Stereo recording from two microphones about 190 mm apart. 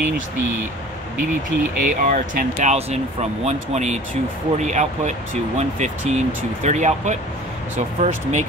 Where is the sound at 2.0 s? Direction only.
40° right (ahead or behind).